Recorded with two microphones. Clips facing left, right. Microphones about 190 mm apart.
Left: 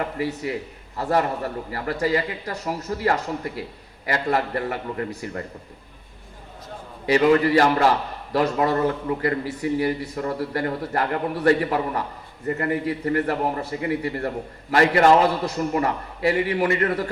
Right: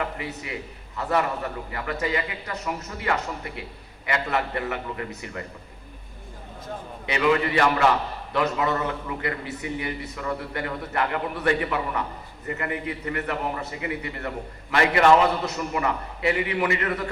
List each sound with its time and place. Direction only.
0.9 s a man's voice: 35° left (ahead or behind)
7.0 s a man's voice: 40° left (ahead or behind)